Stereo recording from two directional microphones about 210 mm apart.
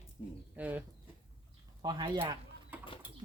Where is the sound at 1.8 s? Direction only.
20° right (ahead or behind).